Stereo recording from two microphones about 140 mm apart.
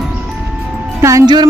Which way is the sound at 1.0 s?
20° right (ahead or behind).